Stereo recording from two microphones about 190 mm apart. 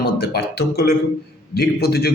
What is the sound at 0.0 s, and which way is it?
Speech, 55° left (ahead or behind).